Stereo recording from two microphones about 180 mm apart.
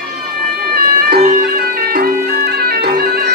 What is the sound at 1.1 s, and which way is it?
Music, 50° right (ahead or behind).